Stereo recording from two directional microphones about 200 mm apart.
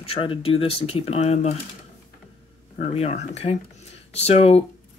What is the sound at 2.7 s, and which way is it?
Speech, 30° left (ahead or behind).